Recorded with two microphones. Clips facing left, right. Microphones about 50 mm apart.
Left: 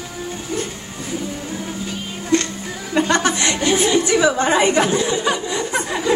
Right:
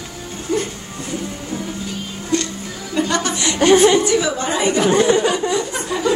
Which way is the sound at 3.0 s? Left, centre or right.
Left.